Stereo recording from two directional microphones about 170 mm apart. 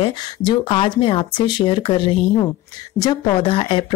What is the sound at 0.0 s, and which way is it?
Speech, 25° left (ahead or behind).